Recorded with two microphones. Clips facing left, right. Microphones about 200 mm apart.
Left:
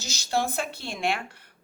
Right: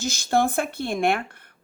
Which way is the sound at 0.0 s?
55° right (ahead or behind).